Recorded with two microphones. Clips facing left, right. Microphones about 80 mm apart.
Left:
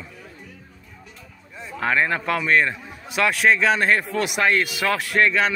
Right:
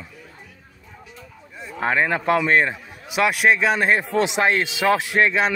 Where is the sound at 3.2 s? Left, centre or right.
Centre.